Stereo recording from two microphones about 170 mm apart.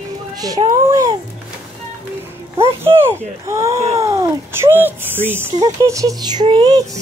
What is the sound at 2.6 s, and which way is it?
Speech, 15° right (ahead or behind).